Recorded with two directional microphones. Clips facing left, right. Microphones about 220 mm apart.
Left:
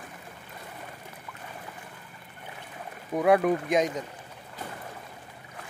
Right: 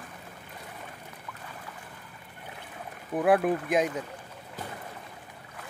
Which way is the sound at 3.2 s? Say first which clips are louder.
Left 1 dB; centre (ahead or behind).